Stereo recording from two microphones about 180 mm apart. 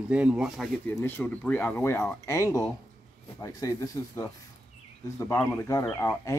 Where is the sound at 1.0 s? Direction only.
10° left (ahead or behind).